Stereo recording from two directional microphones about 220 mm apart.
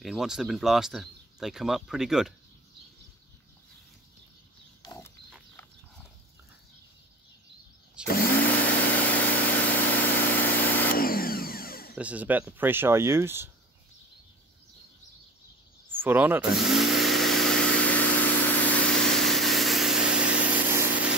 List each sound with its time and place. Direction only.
0.0 s speech: centre (ahead or behind)
4.8 s pig: 15° left (ahead or behind)
8.1 s a sound: 40° left (ahead or behind)
8.5 s engine: 5° left (ahead or behind)
10.9 s a sound: 40° left (ahead or behind)
11.9 s speech: 5° right (ahead or behind)
15.9 s speech: 10° right (ahead or behind)
16.5 s vehicle: centre (ahead or behind)